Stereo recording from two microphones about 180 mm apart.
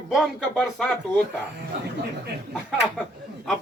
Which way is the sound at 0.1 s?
Centre (ahead or behind).